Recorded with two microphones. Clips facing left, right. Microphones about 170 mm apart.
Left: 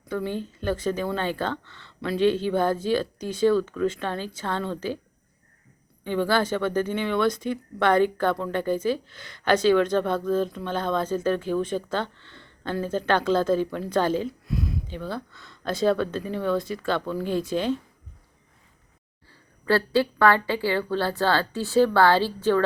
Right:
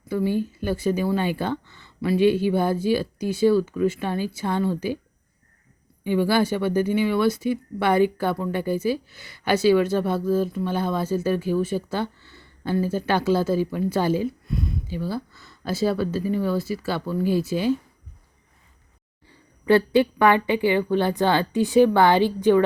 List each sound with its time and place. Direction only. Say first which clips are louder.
0.0 s speech: right 5 dB; 5° right (ahead or behind)
6.1 s speech: right 3 dB; 10° right (ahead or behind)
19.3 s speech: right 5 dB; 20° right (ahead or behind)